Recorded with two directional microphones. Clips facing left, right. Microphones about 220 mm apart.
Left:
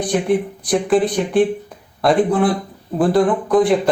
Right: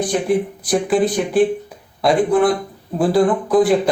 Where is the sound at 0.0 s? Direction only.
Centre (ahead or behind).